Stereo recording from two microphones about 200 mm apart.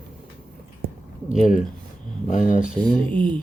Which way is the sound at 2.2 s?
40° left (ahead or behind).